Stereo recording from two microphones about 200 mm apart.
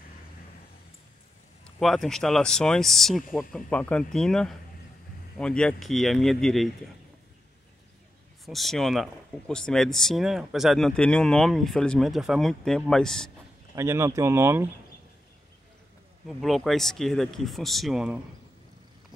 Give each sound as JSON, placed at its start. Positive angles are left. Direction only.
{"t": 1.8, "sound": "speech", "side_deg": 0}
{"t": 8.5, "sound": "speech", "side_deg": 0}
{"t": 13.7, "sound": "speech", "side_deg": -15}
{"t": 16.3, "sound": "speech", "side_deg": 0}